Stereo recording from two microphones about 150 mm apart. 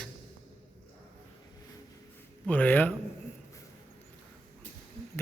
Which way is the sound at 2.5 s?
10° left (ahead or behind).